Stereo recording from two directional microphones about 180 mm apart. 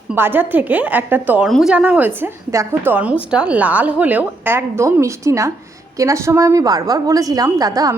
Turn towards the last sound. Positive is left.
turn(degrees=-20)  # may be behind; listen again after turning